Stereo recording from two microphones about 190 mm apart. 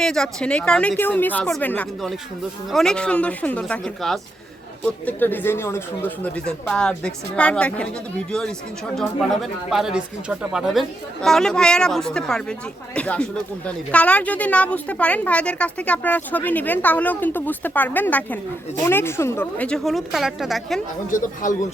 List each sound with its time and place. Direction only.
0.0 s speech: 5° left (ahead or behind)
21.1 s speech: 45° left (ahead or behind)